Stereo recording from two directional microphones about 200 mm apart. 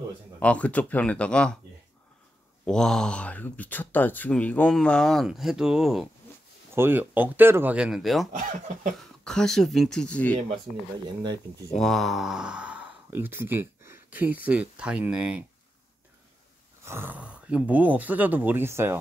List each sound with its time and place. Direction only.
0.4 s speech: 5° left (ahead or behind)
2.6 s speech: 5° left (ahead or behind)
8.4 s speech: 40° right (ahead or behind)
9.2 s speech: 5° left (ahead or behind)
11.7 s speech: centre (ahead or behind)
16.8 s speech: 10° right (ahead or behind)